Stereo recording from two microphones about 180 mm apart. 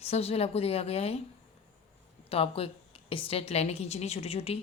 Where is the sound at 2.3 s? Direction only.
30° left (ahead or behind).